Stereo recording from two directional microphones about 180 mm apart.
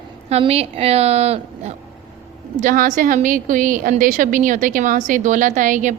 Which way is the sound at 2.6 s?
45° right (ahead or behind).